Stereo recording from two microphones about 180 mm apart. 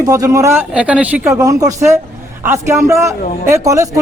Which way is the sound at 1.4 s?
20° right (ahead or behind).